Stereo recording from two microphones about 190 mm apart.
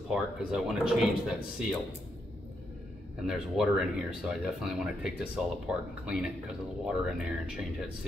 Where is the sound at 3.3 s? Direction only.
5° right (ahead or behind).